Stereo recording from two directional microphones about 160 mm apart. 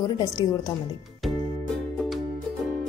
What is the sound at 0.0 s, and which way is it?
Speech, 25° left (ahead or behind).